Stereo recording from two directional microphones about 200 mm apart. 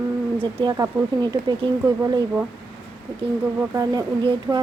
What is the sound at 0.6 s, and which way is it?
Speech, 20° right (ahead or behind).